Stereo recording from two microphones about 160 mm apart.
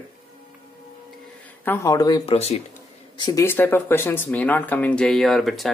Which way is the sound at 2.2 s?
40° left (ahead or behind).